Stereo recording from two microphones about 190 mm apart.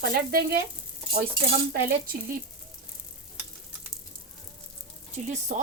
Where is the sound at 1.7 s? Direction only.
55° right (ahead or behind).